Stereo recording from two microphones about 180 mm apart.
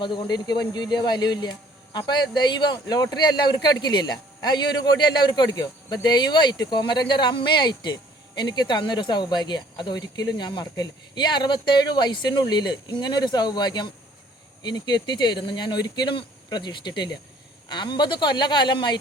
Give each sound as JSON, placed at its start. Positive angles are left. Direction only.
{"t": 0.0, "sound": "speech", "side_deg": 25}